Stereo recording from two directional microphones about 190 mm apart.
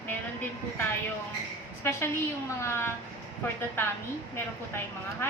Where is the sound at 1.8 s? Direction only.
15° left (ahead or behind).